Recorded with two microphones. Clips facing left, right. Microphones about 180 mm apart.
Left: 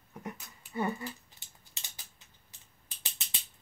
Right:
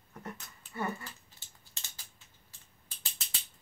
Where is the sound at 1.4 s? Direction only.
20° left (ahead or behind).